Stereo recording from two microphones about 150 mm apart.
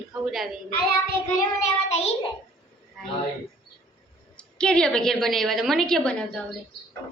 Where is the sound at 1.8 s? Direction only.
45° left (ahead or behind).